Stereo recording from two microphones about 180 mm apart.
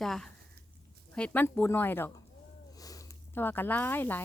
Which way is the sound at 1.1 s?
5° left (ahead or behind).